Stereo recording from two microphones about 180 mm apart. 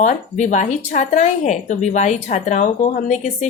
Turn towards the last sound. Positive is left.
turn(degrees=40)  # may be behind; listen again after turning